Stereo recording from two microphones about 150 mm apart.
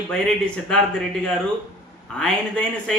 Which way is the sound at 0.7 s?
5° left (ahead or behind).